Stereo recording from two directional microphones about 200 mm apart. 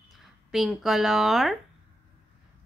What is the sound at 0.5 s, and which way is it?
A woman's voice, centre (ahead or behind).